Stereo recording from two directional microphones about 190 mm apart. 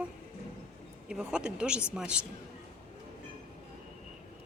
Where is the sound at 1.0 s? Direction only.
5° right (ahead or behind).